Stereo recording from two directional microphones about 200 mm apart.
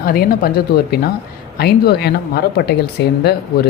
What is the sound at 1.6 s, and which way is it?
Speech, 55° left (ahead or behind).